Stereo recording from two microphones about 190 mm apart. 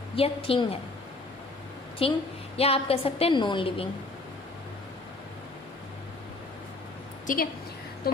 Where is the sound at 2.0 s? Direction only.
30° left (ahead or behind).